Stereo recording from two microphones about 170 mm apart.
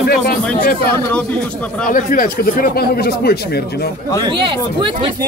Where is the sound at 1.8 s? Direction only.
55° left (ahead or behind).